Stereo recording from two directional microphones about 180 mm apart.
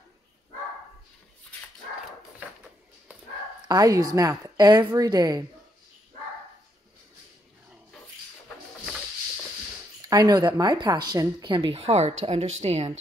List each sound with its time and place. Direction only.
3.6 s speech: 20° right (ahead or behind)
10.0 s speech: 20° right (ahead or behind); by 12.8 s 35° right (ahead or behind)